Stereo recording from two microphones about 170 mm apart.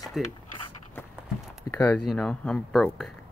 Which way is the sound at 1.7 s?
15° left (ahead or behind).